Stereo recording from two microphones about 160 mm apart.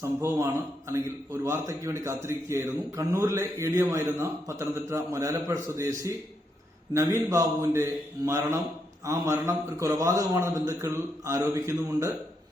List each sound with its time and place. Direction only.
0.0 s a man's voice: 20° right (ahead or behind)